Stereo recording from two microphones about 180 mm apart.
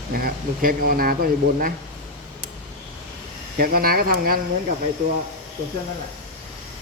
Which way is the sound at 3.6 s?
55° right (ahead or behind).